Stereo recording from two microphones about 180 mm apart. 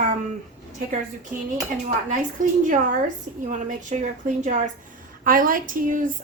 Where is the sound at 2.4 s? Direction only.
45° right (ahead or behind).